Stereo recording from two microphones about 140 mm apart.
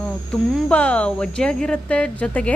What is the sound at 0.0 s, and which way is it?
A woman's voice, 5° left (ahead or behind).